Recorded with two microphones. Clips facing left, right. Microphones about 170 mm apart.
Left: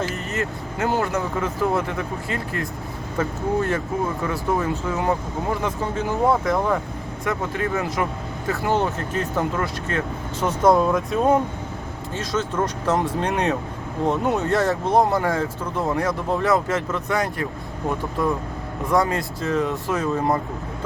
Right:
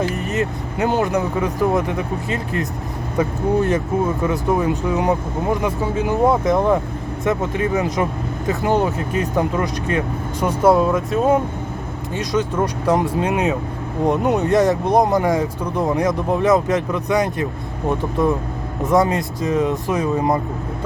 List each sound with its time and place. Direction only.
0.3 s speech: 20° right (ahead or behind); by 11.3 s centre (ahead or behind)
12.1 s speech: 15° right (ahead or behind)
14.0 s speech: 15° right (ahead or behind)